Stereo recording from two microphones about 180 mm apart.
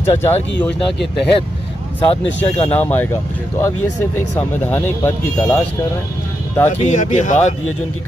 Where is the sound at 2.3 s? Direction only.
35° left (ahead or behind).